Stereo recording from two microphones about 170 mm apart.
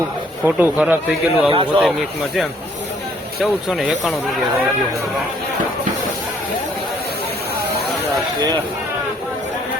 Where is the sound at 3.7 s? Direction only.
Centre (ahead or behind).